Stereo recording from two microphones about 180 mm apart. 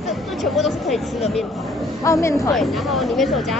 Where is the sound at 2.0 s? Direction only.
15° left (ahead or behind).